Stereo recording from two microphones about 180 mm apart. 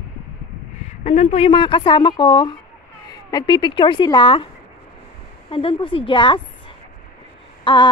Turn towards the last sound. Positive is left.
turn(degrees=25)  # may be behind; listen again after turning